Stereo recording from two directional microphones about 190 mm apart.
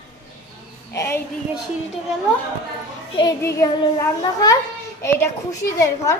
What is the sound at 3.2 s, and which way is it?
A child's voice, 15° left (ahead or behind).